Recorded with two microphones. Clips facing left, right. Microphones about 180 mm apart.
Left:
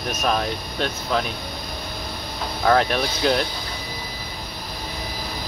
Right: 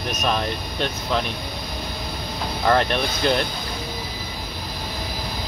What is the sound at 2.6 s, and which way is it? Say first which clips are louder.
Speech: left 1 dB; centre (ahead or behind).